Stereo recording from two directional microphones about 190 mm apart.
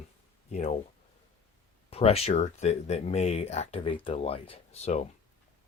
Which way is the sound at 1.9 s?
30° left (ahead or behind).